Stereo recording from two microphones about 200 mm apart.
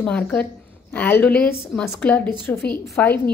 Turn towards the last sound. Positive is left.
turn(degrees=10)  # may be behind; listen again after turning